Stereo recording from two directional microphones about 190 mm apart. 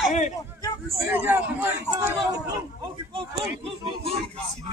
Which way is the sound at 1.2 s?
10° right (ahead or behind).